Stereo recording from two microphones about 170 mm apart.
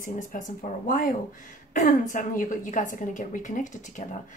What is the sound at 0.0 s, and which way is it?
A woman's voice, 50° left (ahead or behind).